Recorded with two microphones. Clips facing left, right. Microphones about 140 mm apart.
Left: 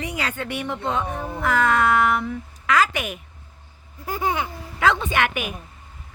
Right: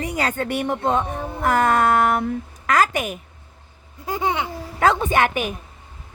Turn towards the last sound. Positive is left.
turn(degrees=-40)  # may be behind; listen again after turning